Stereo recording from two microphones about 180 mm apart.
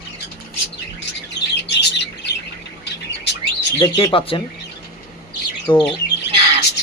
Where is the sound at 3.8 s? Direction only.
30° left (ahead or behind).